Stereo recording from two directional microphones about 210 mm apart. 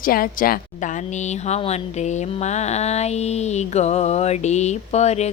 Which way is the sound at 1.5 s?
30° left (ahead or behind).